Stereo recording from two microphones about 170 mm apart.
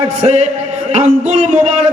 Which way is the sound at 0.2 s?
40° right (ahead or behind).